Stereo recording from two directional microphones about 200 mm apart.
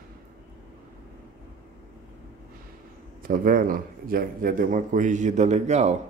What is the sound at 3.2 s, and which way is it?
A man's voice, 45° right (ahead or behind).